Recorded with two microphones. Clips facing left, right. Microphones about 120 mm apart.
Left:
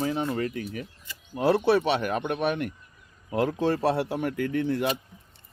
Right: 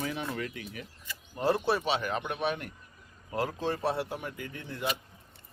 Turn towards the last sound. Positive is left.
turn(degrees=70)  # may be behind; listen again after turning